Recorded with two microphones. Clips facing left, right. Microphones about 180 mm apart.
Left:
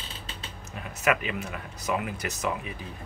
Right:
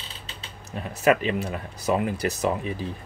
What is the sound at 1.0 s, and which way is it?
Speech, 35° right (ahead or behind).